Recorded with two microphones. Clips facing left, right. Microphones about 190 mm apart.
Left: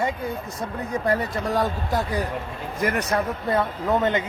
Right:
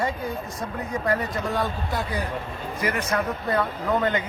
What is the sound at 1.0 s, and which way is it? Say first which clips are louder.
Speech: left 1 dB; 35° left (ahead or behind).